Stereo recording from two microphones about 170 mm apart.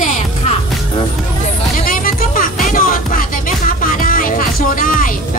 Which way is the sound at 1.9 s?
55° left (ahead or behind).